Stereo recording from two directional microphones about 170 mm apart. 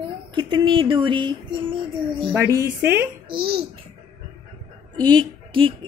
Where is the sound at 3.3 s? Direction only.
65° right (ahead or behind).